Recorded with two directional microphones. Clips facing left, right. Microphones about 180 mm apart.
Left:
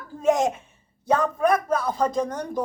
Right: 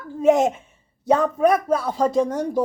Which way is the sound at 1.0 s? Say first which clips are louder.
Right 4 dB; 25° right (ahead or behind).